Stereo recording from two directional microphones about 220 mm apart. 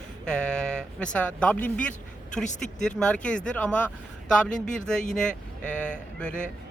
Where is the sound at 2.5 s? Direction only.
35° left (ahead or behind).